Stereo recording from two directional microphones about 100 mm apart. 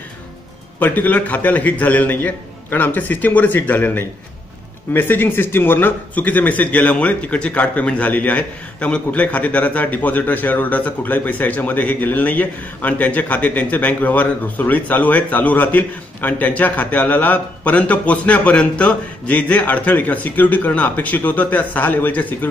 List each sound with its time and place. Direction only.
0.7 s speech: 15° left (ahead or behind)